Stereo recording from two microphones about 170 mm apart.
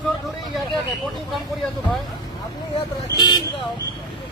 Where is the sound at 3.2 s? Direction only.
25° left (ahead or behind).